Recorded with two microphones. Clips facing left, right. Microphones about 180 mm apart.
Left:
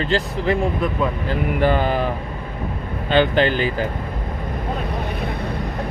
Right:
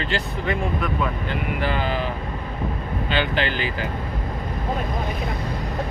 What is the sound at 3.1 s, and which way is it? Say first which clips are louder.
Speech: left 8 dB; 45° left (ahead or behind).